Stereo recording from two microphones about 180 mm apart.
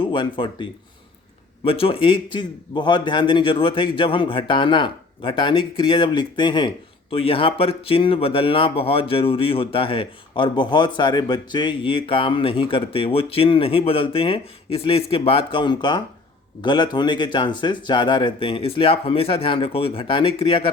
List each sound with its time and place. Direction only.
0.0 s a man's voice: 25° left (ahead or behind)